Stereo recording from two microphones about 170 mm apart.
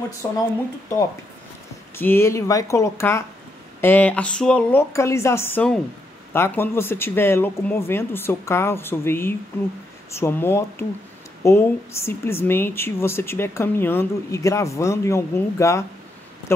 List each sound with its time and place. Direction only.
0.2 s speech: 20° left (ahead or behind)
2.0 s speech: 15° left (ahead or behind)